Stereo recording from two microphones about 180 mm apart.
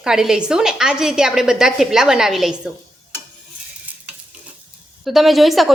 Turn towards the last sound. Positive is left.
turn(degrees=0)  # may be behind; listen again after turning